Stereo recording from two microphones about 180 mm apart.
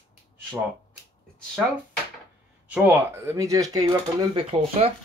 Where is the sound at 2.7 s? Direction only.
10° right (ahead or behind).